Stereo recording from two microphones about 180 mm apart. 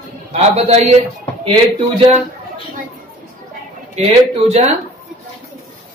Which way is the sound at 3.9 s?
40° right (ahead or behind).